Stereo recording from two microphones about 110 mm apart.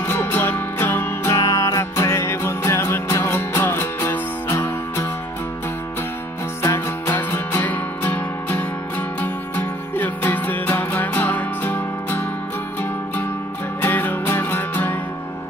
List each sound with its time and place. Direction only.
0.0 s music: 20° left (ahead or behind)
6.6 s music: 25° left (ahead or behind)
13.7 s music: 20° left (ahead or behind)